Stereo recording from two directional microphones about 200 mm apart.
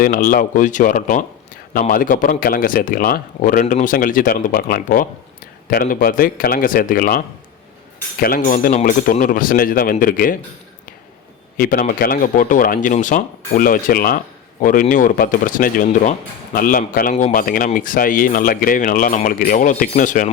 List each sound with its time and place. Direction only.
0.0 s a man's voice: 45° left (ahead or behind)
8.2 s a man's voice: 45° left (ahead or behind)
11.5 s a man's voice: 45° left (ahead or behind)